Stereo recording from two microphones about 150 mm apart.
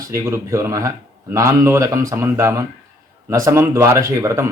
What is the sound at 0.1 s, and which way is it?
A man's voice, 20° right (ahead or behind).